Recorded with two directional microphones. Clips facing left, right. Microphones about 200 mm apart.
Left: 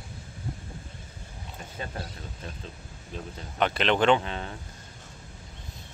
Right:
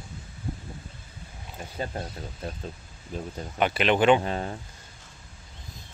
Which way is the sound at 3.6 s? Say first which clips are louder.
Right 2 dB; 10° right (ahead or behind).